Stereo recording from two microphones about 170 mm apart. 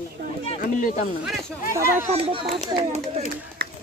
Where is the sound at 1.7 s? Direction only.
15° right (ahead or behind).